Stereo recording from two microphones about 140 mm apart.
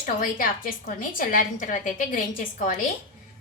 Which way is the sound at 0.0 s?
80° left.